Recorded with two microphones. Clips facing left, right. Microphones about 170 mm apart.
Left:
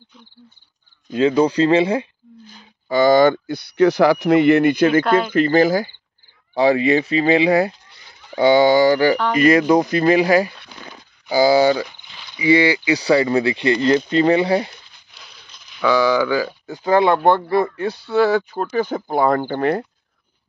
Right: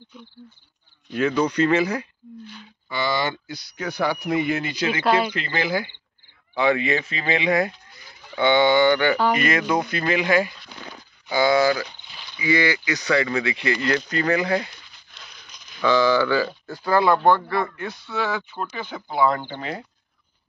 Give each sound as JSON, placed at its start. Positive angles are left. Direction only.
{"t": 1.1, "sound": "speech", "side_deg": 30}
{"t": 2.4, "sound": "speech", "side_deg": 40}
{"t": 15.8, "sound": "speech", "side_deg": 10}